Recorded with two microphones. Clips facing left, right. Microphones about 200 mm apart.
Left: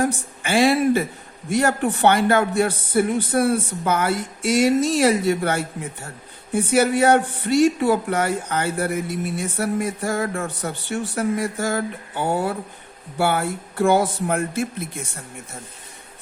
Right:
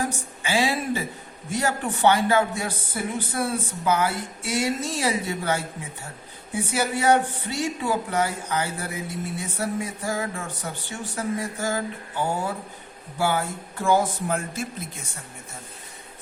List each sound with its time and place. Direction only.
0.0 s speech: 65° left (ahead or behind)
4.9 s speech: 70° left (ahead or behind)
6.7 s speech: 60° left (ahead or behind)